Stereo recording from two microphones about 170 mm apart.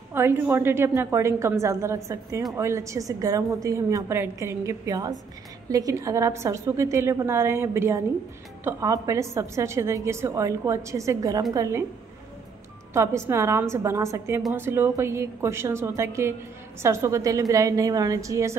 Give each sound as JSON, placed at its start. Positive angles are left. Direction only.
{"t": 0.1, "sound": "a woman's voice", "side_deg": -15}
{"t": 12.9, "sound": "a woman's voice", "side_deg": -15}